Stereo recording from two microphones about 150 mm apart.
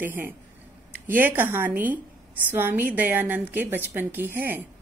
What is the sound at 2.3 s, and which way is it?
A woman's voice, 10° right (ahead or behind).